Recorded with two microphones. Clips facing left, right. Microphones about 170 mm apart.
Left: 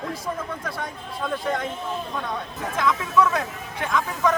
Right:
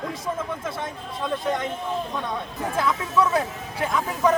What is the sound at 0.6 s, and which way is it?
Speech, 25° right (ahead or behind).